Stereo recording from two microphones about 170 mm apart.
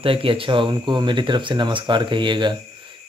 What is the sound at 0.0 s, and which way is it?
Speech, 30° right (ahead or behind).